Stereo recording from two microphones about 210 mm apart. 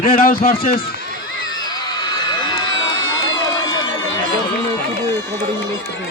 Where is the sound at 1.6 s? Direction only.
20° left (ahead or behind).